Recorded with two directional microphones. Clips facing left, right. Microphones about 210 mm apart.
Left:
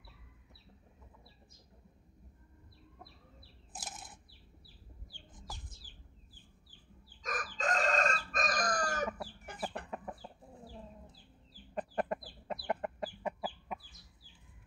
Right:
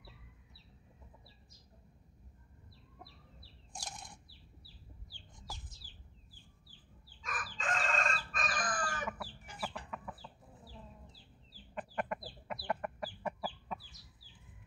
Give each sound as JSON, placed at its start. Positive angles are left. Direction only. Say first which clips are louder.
{"t": 3.7, "sound": "a sound", "louder": "even", "side_deg": 5}
{"t": 5.5, "sound": "bird", "louder": "even", "side_deg": 0}
{"t": 7.2, "sound": "chicken", "louder": "left 6 dB", "side_deg": 40}
{"t": 9.5, "sound": "chicken", "louder": "left 3 dB", "side_deg": 55}
{"t": 9.8, "sound": "chicken", "louder": "left 3 dB", "side_deg": 45}
{"t": 11.7, "sound": "chicken", "louder": "left 4 dB", "side_deg": 35}
{"t": 12.6, "sound": "chicken", "louder": "left 2 dB", "side_deg": 20}